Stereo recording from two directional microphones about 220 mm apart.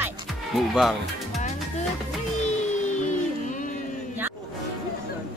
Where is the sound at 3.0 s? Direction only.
35° left (ahead or behind).